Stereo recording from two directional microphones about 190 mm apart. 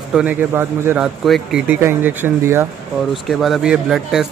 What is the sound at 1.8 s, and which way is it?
Speech, 10° right (ahead or behind).